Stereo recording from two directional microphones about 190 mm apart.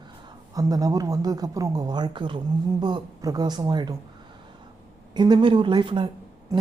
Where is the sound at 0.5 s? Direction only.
20° right (ahead or behind).